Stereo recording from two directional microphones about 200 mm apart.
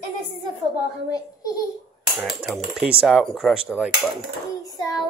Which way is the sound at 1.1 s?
20° left (ahead or behind).